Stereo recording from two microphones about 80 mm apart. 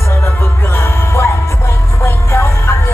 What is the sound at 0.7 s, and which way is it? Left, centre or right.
Music, left.